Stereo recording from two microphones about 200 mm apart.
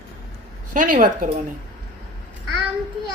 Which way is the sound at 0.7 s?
40° right (ahead or behind).